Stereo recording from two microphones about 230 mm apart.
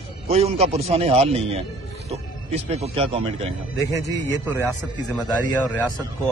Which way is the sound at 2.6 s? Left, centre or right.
Right.